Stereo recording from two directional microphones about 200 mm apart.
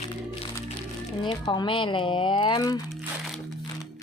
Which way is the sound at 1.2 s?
20° left (ahead or behind).